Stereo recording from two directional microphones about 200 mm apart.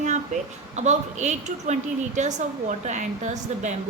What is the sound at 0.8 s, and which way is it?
A woman's voice, 35° right (ahead or behind).